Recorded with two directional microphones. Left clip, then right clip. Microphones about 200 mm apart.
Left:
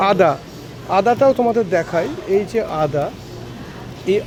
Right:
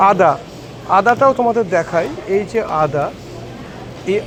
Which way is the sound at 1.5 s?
15° left (ahead or behind).